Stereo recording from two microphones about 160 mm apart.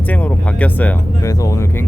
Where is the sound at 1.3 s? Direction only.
20° left (ahead or behind).